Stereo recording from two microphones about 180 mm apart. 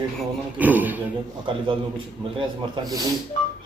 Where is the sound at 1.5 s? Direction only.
25° right (ahead or behind).